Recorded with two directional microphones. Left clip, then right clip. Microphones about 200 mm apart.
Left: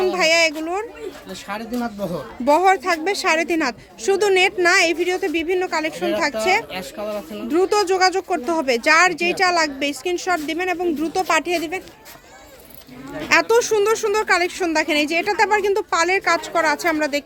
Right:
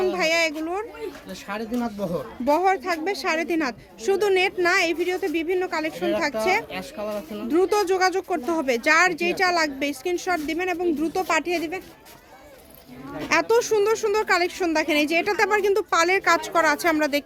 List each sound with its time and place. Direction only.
0.0 s a sound: 10° left (ahead or behind)
1.5 s speech: 5° right (ahead or behind)
2.4 s a woman's voice: 15° left (ahead or behind)
13.2 s speech: 10° left (ahead or behind); by 17.2 s 10° right (ahead or behind)